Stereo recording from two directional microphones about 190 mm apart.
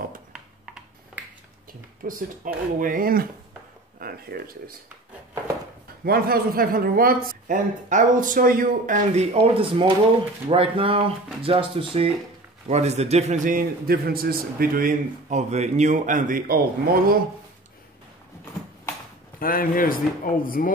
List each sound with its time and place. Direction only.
0.3 s a sound: 5° right (ahead or behind)
2.0 s a man's voice: 45° right (ahead or behind)
6.0 s a man's voice: 50° right (ahead or behind)
19.4 s speech: 50° left (ahead or behind)